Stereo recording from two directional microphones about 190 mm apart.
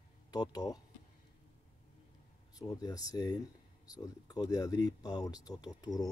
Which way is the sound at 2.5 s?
20° left (ahead or behind).